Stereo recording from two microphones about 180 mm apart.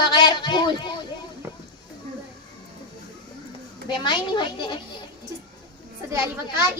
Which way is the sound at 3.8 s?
25° left (ahead or behind).